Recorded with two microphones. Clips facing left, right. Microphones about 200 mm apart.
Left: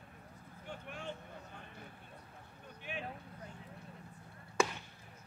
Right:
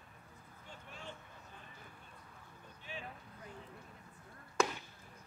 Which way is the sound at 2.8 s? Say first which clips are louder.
Left 5 dB; 65° left (ahead or behind).